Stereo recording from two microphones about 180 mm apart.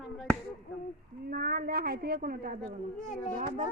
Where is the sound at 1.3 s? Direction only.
55° right (ahead or behind).